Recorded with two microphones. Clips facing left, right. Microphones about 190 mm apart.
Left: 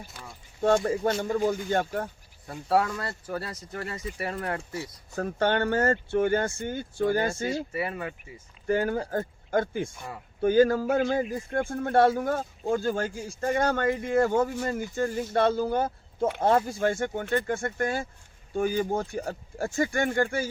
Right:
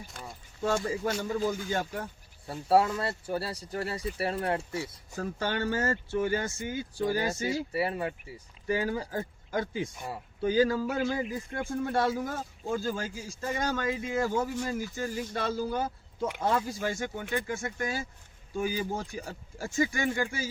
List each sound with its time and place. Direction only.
0.6 s speech: 55° left (ahead or behind)
2.5 s speech: 30° right (ahead or behind)
5.1 s a man's voice: 60° left (ahead or behind)
7.7 s speech: 35° right (ahead or behind)
8.6 s a man's voice: 55° left (ahead or behind)